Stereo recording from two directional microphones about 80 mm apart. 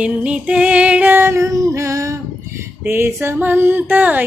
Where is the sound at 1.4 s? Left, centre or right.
Right.